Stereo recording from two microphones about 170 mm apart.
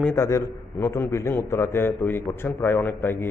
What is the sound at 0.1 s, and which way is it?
A man's voice, 15° left (ahead or behind).